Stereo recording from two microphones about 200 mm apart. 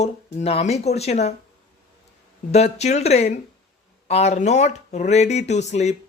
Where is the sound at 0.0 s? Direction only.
30° left (ahead or behind).